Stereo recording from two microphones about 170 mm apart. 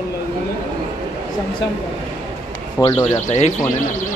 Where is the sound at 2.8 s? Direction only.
30° left (ahead or behind).